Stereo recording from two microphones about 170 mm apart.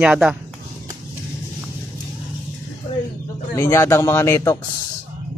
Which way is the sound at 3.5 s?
15° left (ahead or behind).